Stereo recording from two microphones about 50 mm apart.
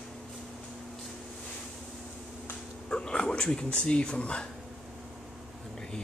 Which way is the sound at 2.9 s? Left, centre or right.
Centre.